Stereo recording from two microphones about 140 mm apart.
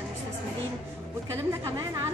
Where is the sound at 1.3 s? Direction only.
25° right (ahead or behind).